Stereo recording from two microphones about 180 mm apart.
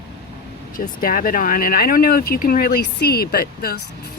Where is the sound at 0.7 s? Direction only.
50° left (ahead or behind).